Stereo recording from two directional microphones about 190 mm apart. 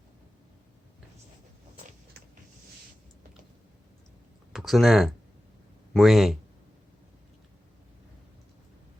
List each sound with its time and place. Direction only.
4.5 s speech: centre (ahead or behind)